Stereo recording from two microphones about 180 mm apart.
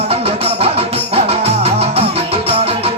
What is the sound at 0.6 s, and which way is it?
Music, 35° right (ahead or behind).